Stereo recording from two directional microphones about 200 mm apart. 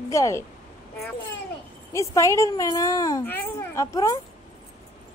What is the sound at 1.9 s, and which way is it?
A child's voice, 15° left (ahead or behind).